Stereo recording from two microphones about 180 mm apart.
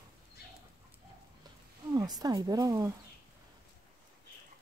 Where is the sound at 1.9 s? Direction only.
20° right (ahead or behind).